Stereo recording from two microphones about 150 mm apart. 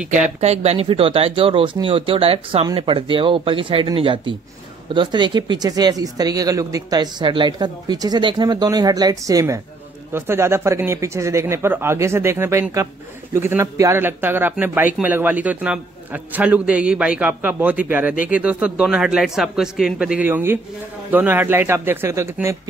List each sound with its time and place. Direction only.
0.1 s speech: 45° right (ahead or behind); by 22.6 s 20° right (ahead or behind)